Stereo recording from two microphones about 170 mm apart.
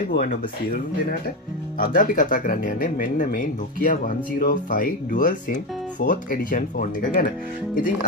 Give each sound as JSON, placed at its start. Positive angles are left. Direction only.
{"t": 1.8, "sound": "speech", "side_deg": 50}